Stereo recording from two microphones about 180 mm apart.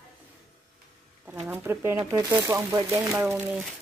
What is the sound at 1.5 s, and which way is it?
Speech, 15° right (ahead or behind).